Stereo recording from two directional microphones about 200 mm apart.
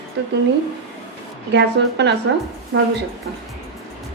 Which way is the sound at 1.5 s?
60° right (ahead or behind).